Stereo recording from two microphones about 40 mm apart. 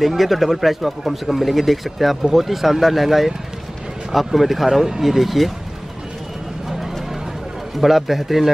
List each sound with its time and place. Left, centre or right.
0.0 s speech: centre
7.8 s speech: centre